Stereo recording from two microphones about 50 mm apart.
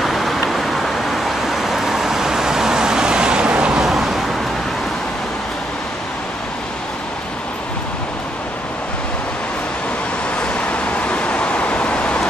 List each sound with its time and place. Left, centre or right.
0.0 s a sound: centre
0.5 s vehicle: centre
3.8 s vehicle: centre
10.5 s vehicle: left